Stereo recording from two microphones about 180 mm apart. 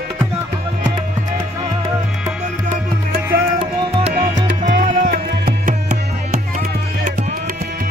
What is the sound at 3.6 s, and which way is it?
Music, 35° right (ahead or behind).